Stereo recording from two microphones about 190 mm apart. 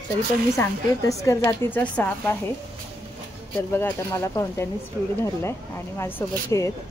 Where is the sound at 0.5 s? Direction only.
15° left (ahead or behind).